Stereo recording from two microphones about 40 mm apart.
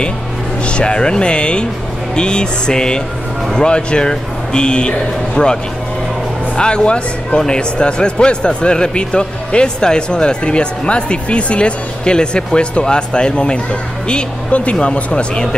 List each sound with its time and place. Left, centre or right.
0.7 s a man's voice: left